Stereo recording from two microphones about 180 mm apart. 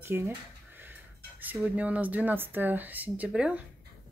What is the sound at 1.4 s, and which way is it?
Speech, 10° right (ahead or behind).